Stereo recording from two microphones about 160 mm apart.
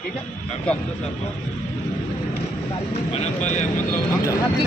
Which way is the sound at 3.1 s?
45° left (ahead or behind).